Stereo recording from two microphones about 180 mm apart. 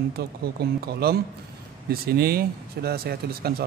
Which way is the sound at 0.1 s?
60° right (ahead or behind).